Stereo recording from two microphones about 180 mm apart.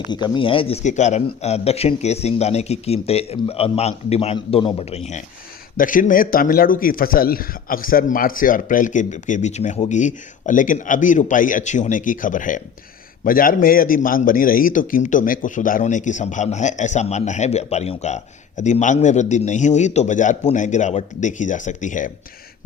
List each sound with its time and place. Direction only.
0.1 s a man's voice: 25° left (ahead or behind)
5.7 s a man's voice: 50° left (ahead or behind)